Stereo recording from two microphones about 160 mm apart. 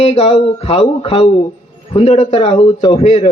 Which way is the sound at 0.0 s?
40° left (ahead or behind).